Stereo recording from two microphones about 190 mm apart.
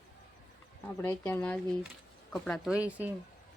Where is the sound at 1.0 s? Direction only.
10° left (ahead or behind); by 3.1 s 5° right (ahead or behind).